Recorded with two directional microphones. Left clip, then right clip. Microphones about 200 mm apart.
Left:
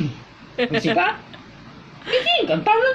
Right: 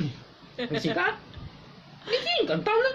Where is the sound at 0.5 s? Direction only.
20° left (ahead or behind).